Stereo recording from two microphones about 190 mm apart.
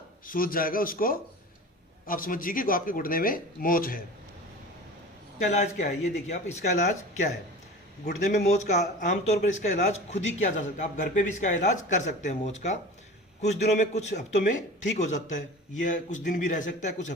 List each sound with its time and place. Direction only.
0.3 s speech: 50° left (ahead or behind)
5.4 s a man's voice: 40° left (ahead or behind)
8.4 s a man's voice: 40° left (ahead or behind)